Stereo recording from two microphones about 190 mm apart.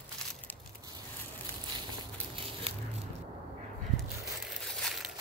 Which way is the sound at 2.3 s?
30° right (ahead or behind).